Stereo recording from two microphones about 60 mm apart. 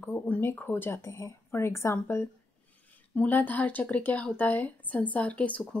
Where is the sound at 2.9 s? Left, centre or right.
Left.